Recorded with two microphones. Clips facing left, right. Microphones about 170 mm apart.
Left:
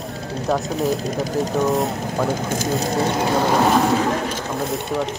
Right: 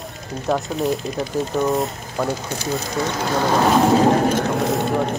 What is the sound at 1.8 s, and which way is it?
Speech, 65° left (ahead or behind).